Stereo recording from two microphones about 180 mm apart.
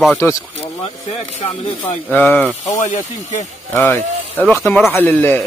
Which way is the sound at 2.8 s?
40° left (ahead or behind).